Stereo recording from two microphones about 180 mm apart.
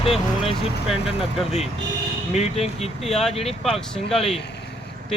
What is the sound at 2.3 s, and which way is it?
Speech, 35° left (ahead or behind).